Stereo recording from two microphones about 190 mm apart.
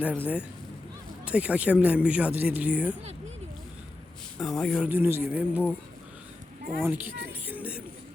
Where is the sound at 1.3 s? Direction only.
5° right (ahead or behind).